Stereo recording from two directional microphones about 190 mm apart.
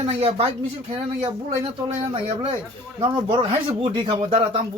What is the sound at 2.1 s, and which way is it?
Speech, 30° right (ahead or behind).